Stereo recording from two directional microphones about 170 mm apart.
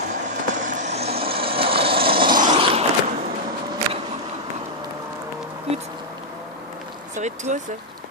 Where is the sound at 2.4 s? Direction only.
30° right (ahead or behind).